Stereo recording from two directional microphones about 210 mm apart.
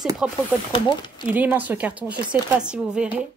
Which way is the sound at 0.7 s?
25° left (ahead or behind).